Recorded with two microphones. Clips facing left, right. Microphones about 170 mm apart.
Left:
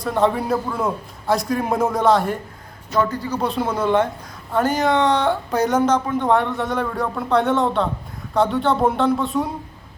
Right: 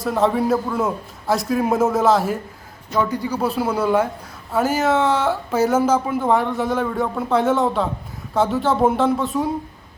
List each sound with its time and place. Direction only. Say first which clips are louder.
0.0 s speech: right 1 dB; centre (ahead or behind)
2.9 s speech: even; 15° right (ahead or behind)